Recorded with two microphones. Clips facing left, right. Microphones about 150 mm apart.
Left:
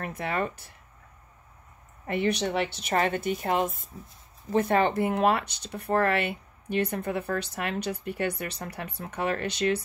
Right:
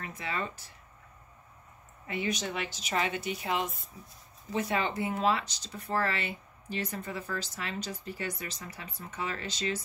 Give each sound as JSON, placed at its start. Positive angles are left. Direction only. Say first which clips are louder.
{"t": 0.0, "sound": "speech", "louder": "left 6 dB", "side_deg": 55}
{"t": 2.0, "sound": "a woman's voice", "louder": "left 7 dB", "side_deg": 60}